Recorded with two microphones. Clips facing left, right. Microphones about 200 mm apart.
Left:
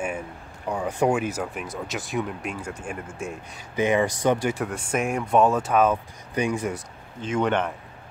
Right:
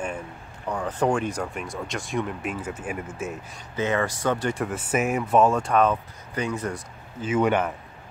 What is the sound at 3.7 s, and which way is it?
Speech, 15° left (ahead or behind).